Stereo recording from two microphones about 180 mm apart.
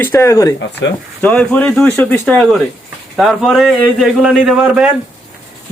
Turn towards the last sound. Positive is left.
turn(degrees=-5)  # may be behind; listen again after turning